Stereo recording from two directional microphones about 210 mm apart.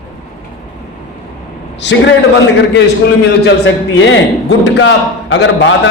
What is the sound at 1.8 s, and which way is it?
Speech, 55° left (ahead or behind).